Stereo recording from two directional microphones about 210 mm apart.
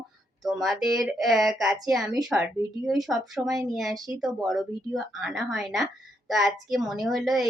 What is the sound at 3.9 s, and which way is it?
Speech, 15° right (ahead or behind).